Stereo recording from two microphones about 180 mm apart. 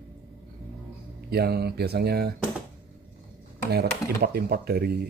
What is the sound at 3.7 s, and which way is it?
A man's voice, 60° right (ahead or behind).